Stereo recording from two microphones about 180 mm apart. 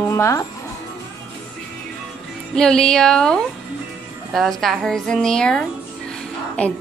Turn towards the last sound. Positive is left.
turn(degrees=5)  # may be behind; listen again after turning